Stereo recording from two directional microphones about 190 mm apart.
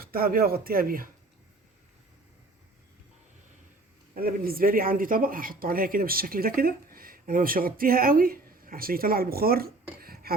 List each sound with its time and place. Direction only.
0.0 s speech: 50° right (ahead or behind)
4.1 s speech: 50° right (ahead or behind)
10.0 s a sound: 55° right (ahead or behind)